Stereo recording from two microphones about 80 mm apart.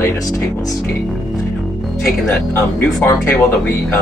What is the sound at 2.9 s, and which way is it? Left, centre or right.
Speech, left.